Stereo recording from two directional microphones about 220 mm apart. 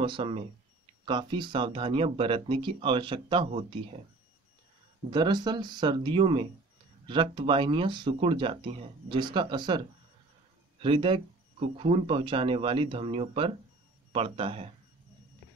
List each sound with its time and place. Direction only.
0.0 s speech: 25° right (ahead or behind)
5.1 s speech: 20° right (ahead or behind)